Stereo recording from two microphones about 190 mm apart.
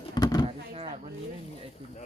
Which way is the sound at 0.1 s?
20° left (ahead or behind).